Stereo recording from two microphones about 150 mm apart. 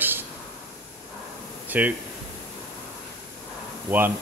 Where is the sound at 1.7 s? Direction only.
10° right (ahead or behind).